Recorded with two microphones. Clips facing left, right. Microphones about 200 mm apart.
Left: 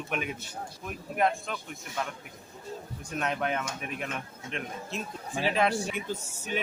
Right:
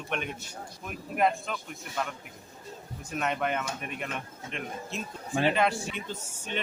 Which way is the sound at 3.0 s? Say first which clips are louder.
Right 1 dB; centre (ahead or behind).